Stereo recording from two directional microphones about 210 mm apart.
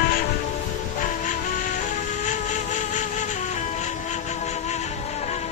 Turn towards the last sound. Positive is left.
turn(degrees=35)  # may be behind; listen again after turning